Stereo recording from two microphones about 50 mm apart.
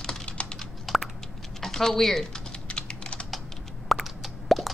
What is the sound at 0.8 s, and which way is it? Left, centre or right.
Typing, centre.